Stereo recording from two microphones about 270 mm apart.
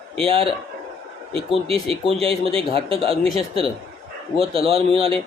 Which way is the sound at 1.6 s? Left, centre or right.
Right.